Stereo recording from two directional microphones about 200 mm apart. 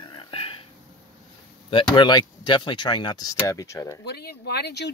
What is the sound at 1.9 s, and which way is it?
Speech, 20° left (ahead or behind).